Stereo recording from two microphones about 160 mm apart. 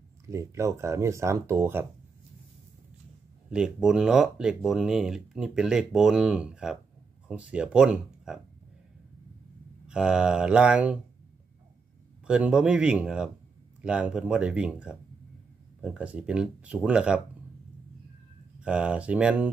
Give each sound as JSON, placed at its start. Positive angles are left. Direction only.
{"t": 0.3, "sound": "speech", "side_deg": -20}
{"t": 3.4, "sound": "speech", "side_deg": -5}
{"t": 9.8, "sound": "speech", "side_deg": -5}
{"t": 12.3, "sound": "speech", "side_deg": -5}
{"t": 18.6, "sound": "speech", "side_deg": -5}